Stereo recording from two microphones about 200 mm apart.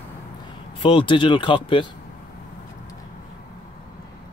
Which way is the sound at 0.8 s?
25° left (ahead or behind).